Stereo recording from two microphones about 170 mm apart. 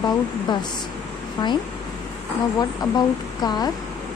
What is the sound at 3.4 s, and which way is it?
Speech, 25° left (ahead or behind).